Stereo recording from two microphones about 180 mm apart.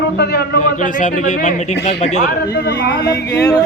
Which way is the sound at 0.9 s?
45° left (ahead or behind).